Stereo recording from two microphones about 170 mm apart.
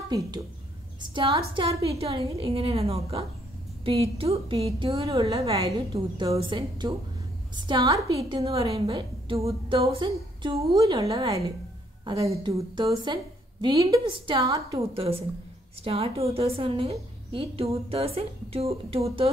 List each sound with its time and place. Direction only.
1.0 s a woman's voice: 30° right (ahead or behind)
5.9 s a woman's voice: 25° right (ahead or behind)
8.5 s a woman's voice: 35° right (ahead or behind)
10.8 s a woman's voice: 20° right (ahead or behind)
11.1 s a woman's voice: 30° right (ahead or behind)
12.0 s a woman's voice: 20° right (ahead or behind)
14.4 s a woman's voice: 20° right (ahead or behind)
15.0 s a woman's voice: 35° right (ahead or behind)